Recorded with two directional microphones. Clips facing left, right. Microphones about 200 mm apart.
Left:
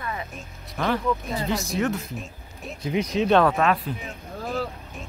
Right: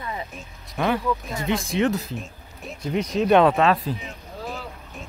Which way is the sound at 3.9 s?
30° right (ahead or behind).